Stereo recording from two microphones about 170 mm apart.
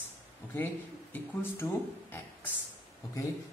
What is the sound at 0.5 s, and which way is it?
A man's voice, 15° left (ahead or behind).